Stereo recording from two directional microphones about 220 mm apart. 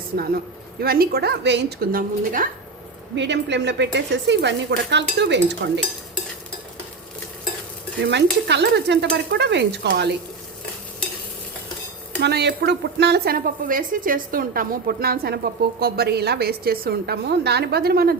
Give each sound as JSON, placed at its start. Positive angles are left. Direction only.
{"t": 0.8, "sound": "a woman's voice", "side_deg": -45}
{"t": 3.2, "sound": "a woman's voice", "side_deg": -50}
{"t": 8.0, "sound": "a woman's voice", "side_deg": -50}
{"t": 12.2, "sound": "a woman's voice", "side_deg": -50}